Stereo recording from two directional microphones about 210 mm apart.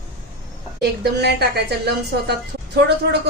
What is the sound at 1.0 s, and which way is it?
A woman's voice, 50° right (ahead or behind).